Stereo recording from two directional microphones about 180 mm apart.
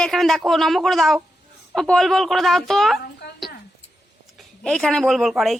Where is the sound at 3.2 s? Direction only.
70° left (ahead or behind).